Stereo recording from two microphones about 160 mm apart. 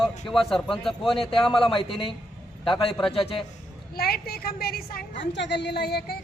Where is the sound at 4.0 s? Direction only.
75° left (ahead or behind); by 6.0 s 90° left.